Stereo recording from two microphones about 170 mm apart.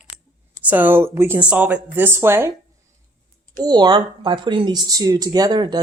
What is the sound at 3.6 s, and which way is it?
Speech, 25° right (ahead or behind).